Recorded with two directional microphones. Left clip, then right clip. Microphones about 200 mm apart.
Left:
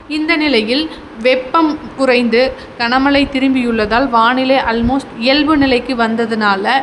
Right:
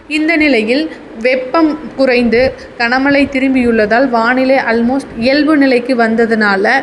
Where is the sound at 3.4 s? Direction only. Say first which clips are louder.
Right 2 dB; 50° left (ahead or behind).